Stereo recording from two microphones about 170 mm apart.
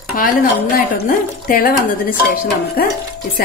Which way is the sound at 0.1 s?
55° left (ahead or behind).